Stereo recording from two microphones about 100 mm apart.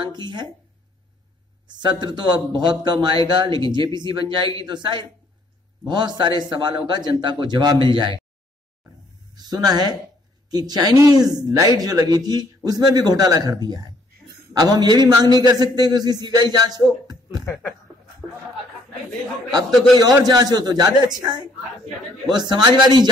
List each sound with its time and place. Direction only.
0.0 s speech: 50° right (ahead or behind)
1.7 s a man's voice: 50° right (ahead or behind)
9.3 s a man's voice: 40° right (ahead or behind)
20.0 s a man's voice: 40° right (ahead or behind)